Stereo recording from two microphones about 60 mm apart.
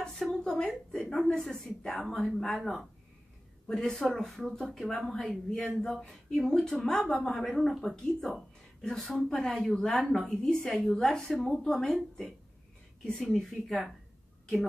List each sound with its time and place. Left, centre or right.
0.2 s a sound: centre
0.7 s a woman's voice: centre
7.2 s a woman's voice: centre